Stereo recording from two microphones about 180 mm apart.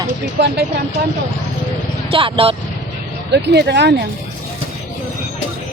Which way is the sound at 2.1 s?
30° right (ahead or behind).